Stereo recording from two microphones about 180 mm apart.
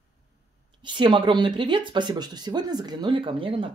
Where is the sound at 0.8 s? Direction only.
25° right (ahead or behind).